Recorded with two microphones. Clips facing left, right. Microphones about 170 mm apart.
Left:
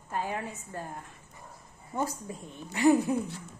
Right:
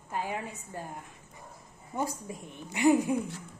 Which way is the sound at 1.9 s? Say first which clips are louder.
Left 1 dB; 15° right (ahead or behind).